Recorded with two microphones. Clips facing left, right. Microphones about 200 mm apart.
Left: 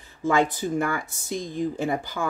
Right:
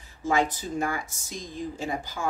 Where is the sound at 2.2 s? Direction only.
60° left (ahead or behind).